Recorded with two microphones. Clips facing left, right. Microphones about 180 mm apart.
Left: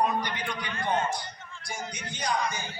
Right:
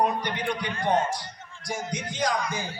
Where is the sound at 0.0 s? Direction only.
60° right (ahead or behind).